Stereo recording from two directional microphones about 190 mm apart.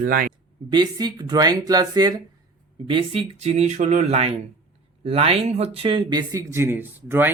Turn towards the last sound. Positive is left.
turn(degrees=-10)  # may be behind; listen again after turning